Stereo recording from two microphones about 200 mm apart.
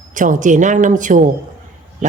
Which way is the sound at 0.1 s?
40° right (ahead or behind).